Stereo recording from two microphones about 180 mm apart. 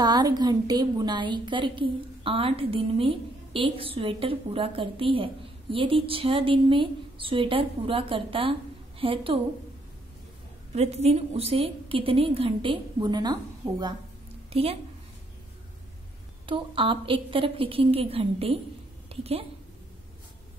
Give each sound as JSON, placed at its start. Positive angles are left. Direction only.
{"t": 0.0, "sound": "a woman's voice", "side_deg": -25}
{"t": 10.7, "sound": "a woman's voice", "side_deg": -35}
{"t": 14.5, "sound": "a woman's voice", "side_deg": -35}
{"t": 16.4, "sound": "a woman's voice", "side_deg": -30}